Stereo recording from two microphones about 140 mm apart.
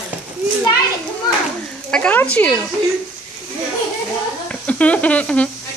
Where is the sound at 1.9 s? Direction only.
10° left (ahead or behind).